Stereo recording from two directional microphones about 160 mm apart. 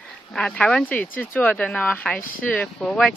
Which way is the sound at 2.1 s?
60° left (ahead or behind).